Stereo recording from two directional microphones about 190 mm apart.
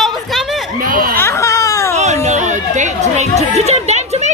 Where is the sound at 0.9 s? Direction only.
50° right (ahead or behind).